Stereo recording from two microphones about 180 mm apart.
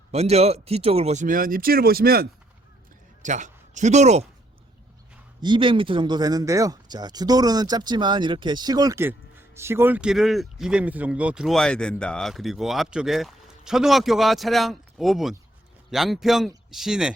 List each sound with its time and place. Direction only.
0.1 s speech: 35° right (ahead or behind); by 2.2 s 55° right (ahead or behind)
3.2 s speech: 45° right (ahead or behind)
5.4 s a man's voice: 25° right (ahead or behind); by 17.2 s 5° right (ahead or behind)